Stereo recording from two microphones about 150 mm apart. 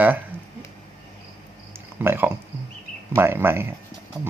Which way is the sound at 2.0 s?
15° right (ahead or behind).